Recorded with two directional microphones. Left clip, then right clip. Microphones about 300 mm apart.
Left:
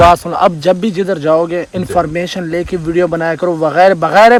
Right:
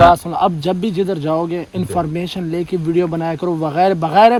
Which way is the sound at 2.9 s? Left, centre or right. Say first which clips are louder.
Left 6 dB; left.